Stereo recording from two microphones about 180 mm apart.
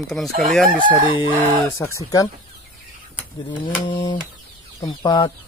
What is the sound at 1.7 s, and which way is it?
Speech, 15° left (ahead or behind).